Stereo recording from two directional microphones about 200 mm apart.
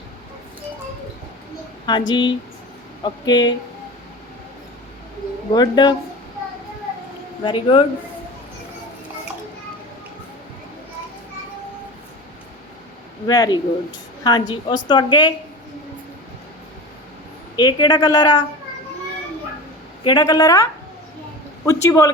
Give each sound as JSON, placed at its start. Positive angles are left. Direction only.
{"t": 1.9, "sound": "a woman's voice", "side_deg": 20}
{"t": 5.5, "sound": "a woman's voice", "side_deg": 20}
{"t": 7.4, "sound": "a woman's voice", "side_deg": 25}
{"t": 13.2, "sound": "a woman's voice", "side_deg": 20}
{"t": 17.6, "sound": "a woman's voice", "side_deg": 20}
{"t": 20.1, "sound": "a woman's voice", "side_deg": 20}
{"t": 21.7, "sound": "speech", "side_deg": 15}